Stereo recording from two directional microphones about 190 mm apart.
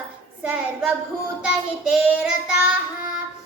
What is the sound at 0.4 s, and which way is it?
Speech, 5° right (ahead or behind).